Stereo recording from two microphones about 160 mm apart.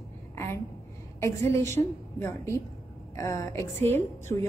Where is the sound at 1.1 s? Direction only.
15° left (ahead or behind).